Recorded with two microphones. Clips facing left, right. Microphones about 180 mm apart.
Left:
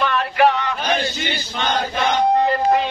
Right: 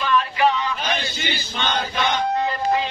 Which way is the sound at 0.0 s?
65° left (ahead or behind).